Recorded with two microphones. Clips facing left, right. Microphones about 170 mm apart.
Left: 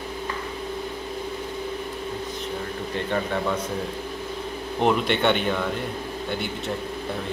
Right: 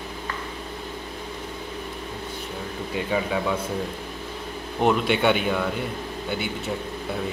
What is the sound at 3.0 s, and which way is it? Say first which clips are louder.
Speech: right 1 dB; 5° right (ahead or behind).